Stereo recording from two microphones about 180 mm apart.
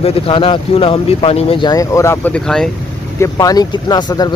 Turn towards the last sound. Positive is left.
turn(degrees=25)  # may be behind; listen again after turning